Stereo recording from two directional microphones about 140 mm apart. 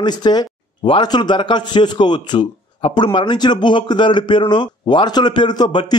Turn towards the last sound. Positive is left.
turn(degrees=30)  # may be behind; listen again after turning